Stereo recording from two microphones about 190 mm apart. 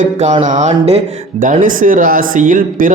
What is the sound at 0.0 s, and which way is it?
Speech, 35° right (ahead or behind).